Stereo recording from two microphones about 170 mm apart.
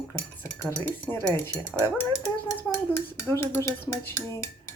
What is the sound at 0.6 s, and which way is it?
Speech, 15° left (ahead or behind).